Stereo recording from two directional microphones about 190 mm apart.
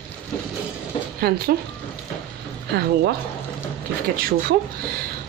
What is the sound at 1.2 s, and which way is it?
Speech, 55° right (ahead or behind).